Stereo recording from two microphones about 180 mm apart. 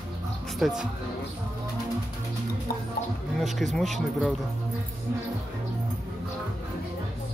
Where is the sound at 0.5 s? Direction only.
Centre (ahead or behind).